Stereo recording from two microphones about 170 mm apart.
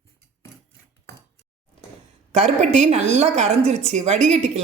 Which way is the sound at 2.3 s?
45° right (ahead or behind).